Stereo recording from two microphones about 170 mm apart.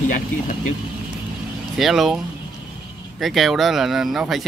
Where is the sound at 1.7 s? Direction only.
Centre (ahead or behind).